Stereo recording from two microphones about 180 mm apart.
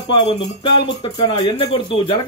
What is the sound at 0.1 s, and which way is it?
Speech, 30° left (ahead or behind).